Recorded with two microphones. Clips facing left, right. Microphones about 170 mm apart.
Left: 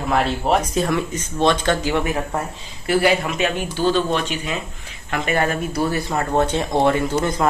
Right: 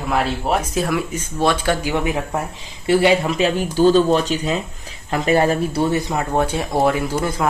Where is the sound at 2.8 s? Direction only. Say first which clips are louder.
Right 3 dB; 30° right (ahead or behind).